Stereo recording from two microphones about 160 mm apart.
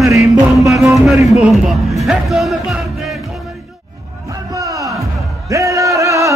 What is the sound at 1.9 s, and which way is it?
Speech, centre (ahead or behind).